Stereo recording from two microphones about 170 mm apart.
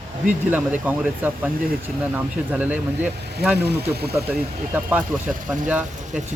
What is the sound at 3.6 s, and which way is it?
Speech, 70° right (ahead or behind).